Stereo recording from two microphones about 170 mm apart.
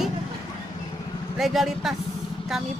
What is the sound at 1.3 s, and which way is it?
Speech, centre (ahead or behind).